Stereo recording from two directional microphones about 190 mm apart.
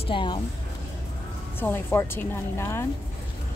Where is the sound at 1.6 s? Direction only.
10° left (ahead or behind).